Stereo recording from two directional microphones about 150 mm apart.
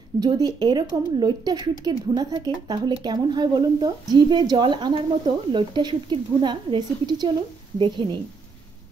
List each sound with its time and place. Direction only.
0.2 s a woman's voice: 25° right (ahead or behind)